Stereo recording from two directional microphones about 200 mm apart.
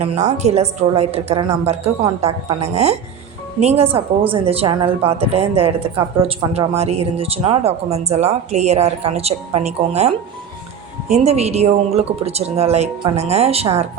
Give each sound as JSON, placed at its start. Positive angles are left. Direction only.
{"t": 0.0, "sound": "speech", "side_deg": -35}